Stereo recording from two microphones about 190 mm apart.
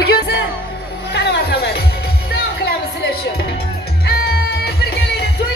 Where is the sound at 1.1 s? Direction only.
65° left (ahead or behind).